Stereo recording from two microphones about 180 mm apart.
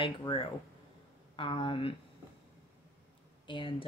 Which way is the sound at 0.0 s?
30° left (ahead or behind).